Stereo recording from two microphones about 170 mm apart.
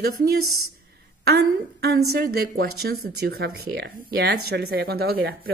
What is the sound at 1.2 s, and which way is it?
Speech, 70° right (ahead or behind).